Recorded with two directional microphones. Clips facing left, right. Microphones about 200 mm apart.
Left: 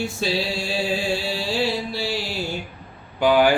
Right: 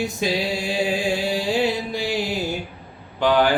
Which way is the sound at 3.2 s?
10° left (ahead or behind).